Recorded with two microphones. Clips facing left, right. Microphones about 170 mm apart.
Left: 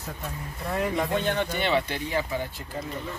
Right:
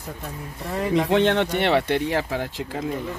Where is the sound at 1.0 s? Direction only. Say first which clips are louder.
Right 7 dB; 85° right.